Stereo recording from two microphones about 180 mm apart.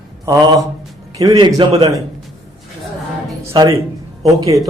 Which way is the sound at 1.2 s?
25° right (ahead or behind).